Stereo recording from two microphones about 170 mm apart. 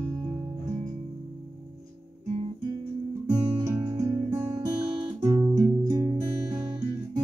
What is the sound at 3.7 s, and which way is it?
Guitar, 15° right (ahead or behind).